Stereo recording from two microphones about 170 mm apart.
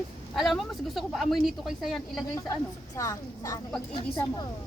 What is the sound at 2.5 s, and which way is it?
A woman's voice, 20° left (ahead or behind).